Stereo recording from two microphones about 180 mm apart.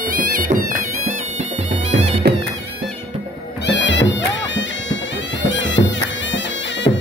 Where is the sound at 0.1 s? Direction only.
50° right (ahead or behind).